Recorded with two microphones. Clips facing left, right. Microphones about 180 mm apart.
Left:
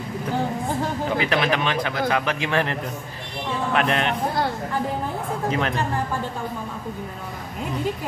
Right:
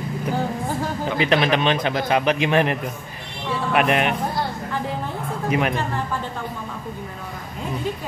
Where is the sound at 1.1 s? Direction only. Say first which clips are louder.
Right 4 dB; 20° right (ahead or behind).